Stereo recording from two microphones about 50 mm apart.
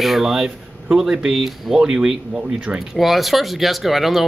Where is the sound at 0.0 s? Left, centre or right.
Centre.